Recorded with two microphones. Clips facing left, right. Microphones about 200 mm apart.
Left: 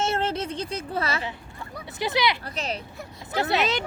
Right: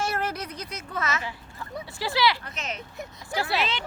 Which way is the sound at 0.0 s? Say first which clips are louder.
Left 4 dB; 25° left (ahead or behind).